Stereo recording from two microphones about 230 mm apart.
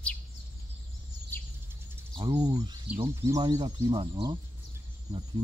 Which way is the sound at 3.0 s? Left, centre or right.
Centre.